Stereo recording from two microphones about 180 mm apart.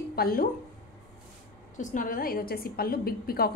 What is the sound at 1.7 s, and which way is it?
A woman's voice, 45° left (ahead or behind).